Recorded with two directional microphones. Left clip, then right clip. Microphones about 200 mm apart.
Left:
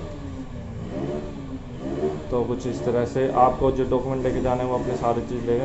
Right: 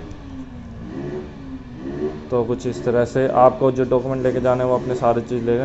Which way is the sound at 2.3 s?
20° right (ahead or behind).